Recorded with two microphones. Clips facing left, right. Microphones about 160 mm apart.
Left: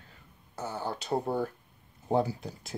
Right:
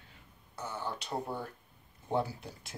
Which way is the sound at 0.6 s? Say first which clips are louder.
Left 4 dB; 35° left (ahead or behind).